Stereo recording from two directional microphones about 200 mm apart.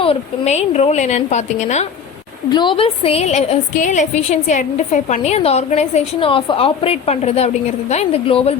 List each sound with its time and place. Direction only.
0.0 s a woman's voice: 30° left (ahead or behind)
2.5 s a woman's voice: 25° left (ahead or behind)